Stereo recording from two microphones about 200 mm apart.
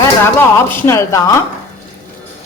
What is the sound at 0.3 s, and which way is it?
Speech, 10° left (ahead or behind).